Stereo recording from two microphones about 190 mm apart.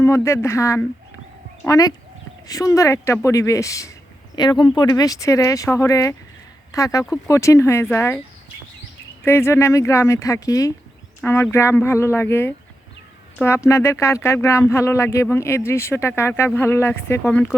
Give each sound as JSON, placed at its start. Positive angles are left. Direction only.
{"t": 0.0, "sound": "speech", "side_deg": 15}
{"t": 9.2, "sound": "speech", "side_deg": 15}